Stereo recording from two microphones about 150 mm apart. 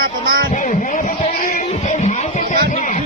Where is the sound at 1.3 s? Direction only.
70° left (ahead or behind).